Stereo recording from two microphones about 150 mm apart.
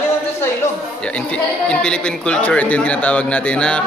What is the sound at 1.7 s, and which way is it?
A man's voice, 5° left (ahead or behind).